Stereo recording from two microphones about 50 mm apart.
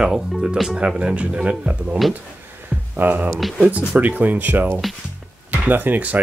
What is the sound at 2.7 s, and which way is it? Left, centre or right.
Music, right.